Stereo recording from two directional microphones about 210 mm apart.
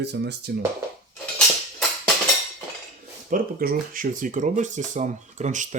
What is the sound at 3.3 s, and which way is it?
Speech, 40° right (ahead or behind).